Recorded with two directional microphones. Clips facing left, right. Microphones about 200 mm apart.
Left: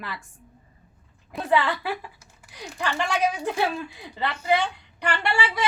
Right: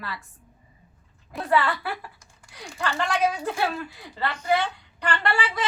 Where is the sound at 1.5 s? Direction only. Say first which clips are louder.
Left 1 dB; 20° left (ahead or behind).